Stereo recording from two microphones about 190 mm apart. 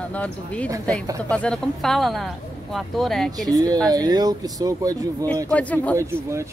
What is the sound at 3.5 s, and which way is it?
Speech, 20° right (ahead or behind).